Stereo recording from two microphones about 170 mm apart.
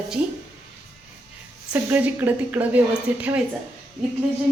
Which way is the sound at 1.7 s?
10° right (ahead or behind).